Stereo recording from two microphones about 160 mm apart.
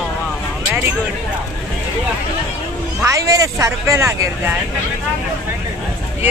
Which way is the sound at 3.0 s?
20° right (ahead or behind).